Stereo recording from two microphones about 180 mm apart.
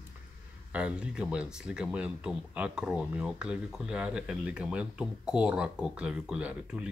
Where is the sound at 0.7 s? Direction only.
5° right (ahead or behind).